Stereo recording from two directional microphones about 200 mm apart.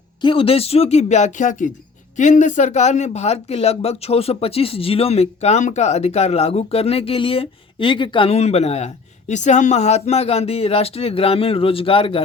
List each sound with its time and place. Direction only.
0.2 s speech: 25° left (ahead or behind)